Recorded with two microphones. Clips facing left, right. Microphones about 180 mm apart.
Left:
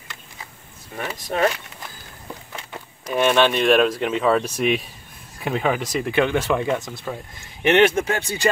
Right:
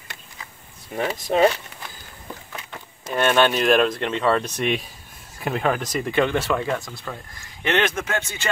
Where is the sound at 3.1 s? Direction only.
Centre (ahead or behind).